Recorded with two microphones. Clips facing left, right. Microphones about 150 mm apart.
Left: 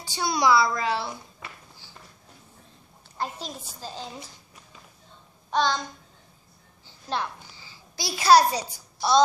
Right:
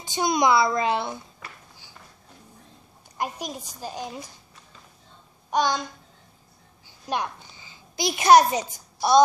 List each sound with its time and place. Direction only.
0.0 s a woman's voice: 20° right (ahead or behind)
3.2 s a child's voice: 15° right (ahead or behind)
5.5 s a child's voice: 15° right (ahead or behind)
7.1 s a child's voice: 15° right (ahead or behind)